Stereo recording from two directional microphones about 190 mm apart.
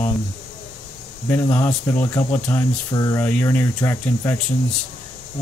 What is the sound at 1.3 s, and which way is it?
Speech, 10° left (ahead or behind).